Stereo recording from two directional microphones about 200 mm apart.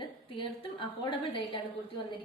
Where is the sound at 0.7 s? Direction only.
25° left (ahead or behind).